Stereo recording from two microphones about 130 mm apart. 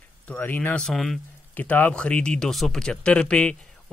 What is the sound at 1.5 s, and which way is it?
Speech, 10° left (ahead or behind).